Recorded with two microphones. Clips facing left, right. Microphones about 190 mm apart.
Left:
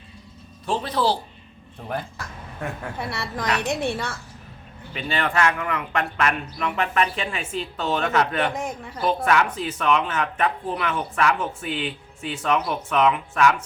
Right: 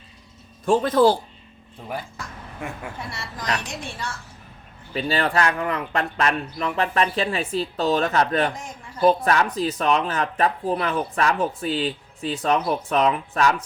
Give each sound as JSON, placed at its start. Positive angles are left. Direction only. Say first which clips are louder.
{"t": 0.6, "sound": "speech", "louder": "right 7 dB", "side_deg": -50}
{"t": 3.1, "sound": "a woman's voice", "louder": "left 2 dB", "side_deg": 60}
{"t": 4.9, "sound": "speech", "louder": "right 2 dB", "side_deg": -35}
{"t": 8.5, "sound": "a sound", "louder": "left 8 dB", "side_deg": 60}
{"t": 9.0, "sound": "speech", "louder": "right 3 dB", "side_deg": -35}